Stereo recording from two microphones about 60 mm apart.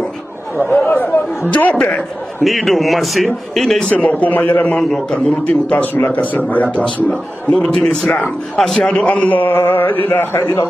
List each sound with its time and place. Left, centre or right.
0.7 s a man's voice: left
2.4 s a man's voice: centre
3.9 s a man's voice: left
7.1 s a man's voice: centre
8.5 s a man's voice: centre
8.8 s a man's voice: left
10.3 s speech: left